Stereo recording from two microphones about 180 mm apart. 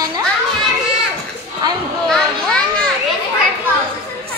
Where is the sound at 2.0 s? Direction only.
5° left (ahead or behind).